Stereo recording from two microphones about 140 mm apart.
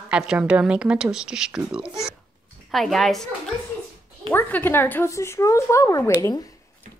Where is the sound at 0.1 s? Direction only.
5° right (ahead or behind).